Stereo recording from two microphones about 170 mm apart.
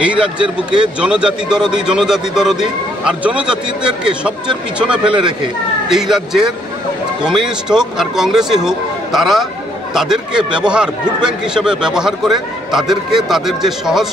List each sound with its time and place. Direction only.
0.0 s a man's voice: 5° right (ahead or behind)